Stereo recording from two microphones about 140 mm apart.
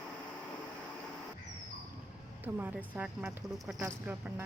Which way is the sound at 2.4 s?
15° right (ahead or behind).